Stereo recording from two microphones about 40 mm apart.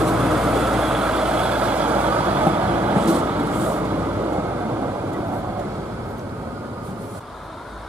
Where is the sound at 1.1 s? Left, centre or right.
Right.